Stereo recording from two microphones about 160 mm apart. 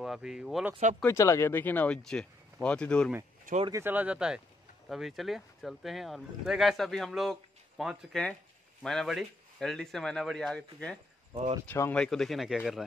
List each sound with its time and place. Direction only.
0.0 s speech: centre (ahead or behind)
1.0 s speech: 20° left (ahead or behind)
3.5 s speech: 60° right (ahead or behind)
3.8 s speech: 10° right (ahead or behind)